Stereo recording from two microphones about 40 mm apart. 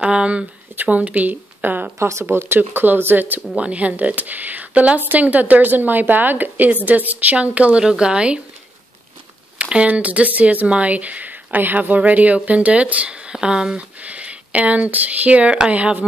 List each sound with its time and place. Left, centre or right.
0.0 s speech: right
0.7 s speech: right
2.3 s speech: right
3.5 s speech: right
7.3 s speech: right
7.8 s speech: centre
9.6 s a sound: right
9.8 s speech: right
11.5 s speech: right; by 13.7 s centre
13.7 s speech: right